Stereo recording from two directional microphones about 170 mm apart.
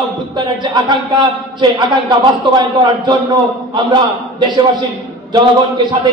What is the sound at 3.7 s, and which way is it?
A man's voice, 25° right (ahead or behind).